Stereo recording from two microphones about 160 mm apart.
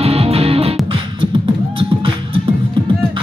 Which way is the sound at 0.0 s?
40° right (ahead or behind).